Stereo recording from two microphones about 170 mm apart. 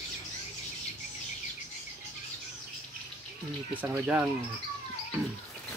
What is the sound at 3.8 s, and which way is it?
Speech, 10° right (ahead or behind).